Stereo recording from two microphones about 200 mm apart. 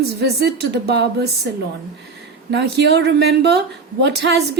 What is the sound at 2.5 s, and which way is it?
A woman's voice, 60° right (ahead or behind).